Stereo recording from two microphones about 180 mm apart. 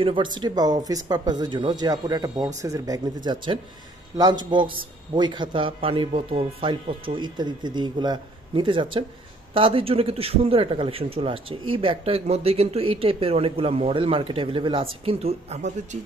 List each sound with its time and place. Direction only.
0.0 s a man's voice: 25° right (ahead or behind)